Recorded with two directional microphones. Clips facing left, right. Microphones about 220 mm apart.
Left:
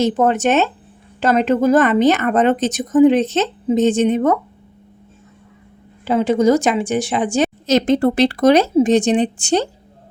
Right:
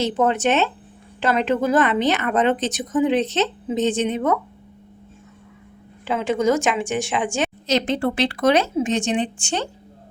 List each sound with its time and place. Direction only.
0.0 s a woman's voice: 45° left (ahead or behind)
6.1 s a woman's voice: 35° left (ahead or behind)